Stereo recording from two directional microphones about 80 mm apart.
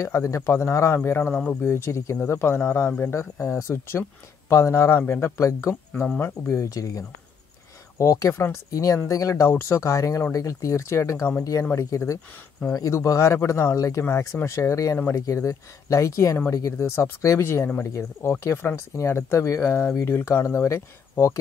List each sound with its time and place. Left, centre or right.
0.0 s speech: left